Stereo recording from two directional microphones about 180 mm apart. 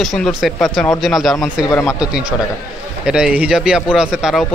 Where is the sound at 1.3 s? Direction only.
20° left (ahead or behind).